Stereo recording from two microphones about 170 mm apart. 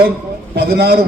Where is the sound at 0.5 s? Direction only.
75° right (ahead or behind).